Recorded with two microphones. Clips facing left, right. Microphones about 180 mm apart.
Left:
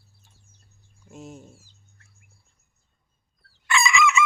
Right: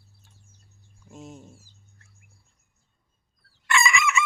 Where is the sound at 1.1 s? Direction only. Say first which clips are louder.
Left 1 dB; 5° left (ahead or behind).